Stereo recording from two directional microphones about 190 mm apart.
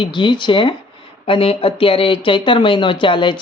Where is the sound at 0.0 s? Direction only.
25° left (ahead or behind).